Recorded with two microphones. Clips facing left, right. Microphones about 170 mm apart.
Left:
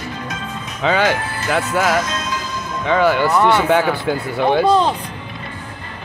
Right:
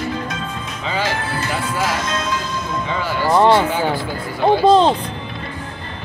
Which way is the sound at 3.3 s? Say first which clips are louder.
Right 2 dB; 30° right (ahead or behind).